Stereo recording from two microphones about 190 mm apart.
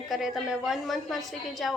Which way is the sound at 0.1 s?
Centre (ahead or behind).